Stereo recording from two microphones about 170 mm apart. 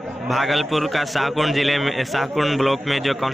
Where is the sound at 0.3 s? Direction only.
Centre (ahead or behind).